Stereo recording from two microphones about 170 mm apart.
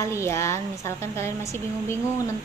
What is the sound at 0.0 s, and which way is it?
A woman's voice, 15° left (ahead or behind).